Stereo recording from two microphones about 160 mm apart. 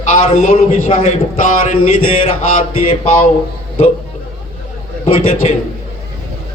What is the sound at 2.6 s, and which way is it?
Speech, 55° left (ahead or behind).